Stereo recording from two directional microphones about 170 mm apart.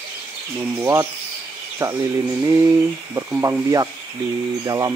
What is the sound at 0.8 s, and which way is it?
Speech, 20° right (ahead or behind).